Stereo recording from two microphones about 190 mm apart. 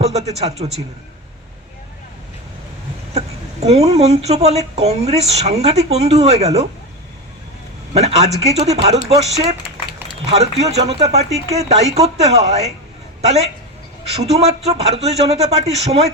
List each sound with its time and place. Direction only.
0.0 s a woman's voice: 35° right (ahead or behind)
3.2 s a woman's voice: 35° right (ahead or behind)
7.9 s a woman's voice: 35° right (ahead or behind)